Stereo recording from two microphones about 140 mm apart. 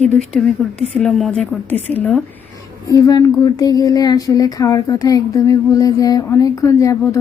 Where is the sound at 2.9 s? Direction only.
25° left (ahead or behind).